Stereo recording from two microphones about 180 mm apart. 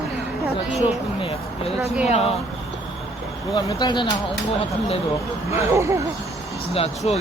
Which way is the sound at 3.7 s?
25° left (ahead or behind).